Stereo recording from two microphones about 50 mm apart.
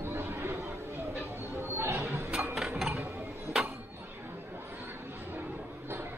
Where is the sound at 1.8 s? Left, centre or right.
Right.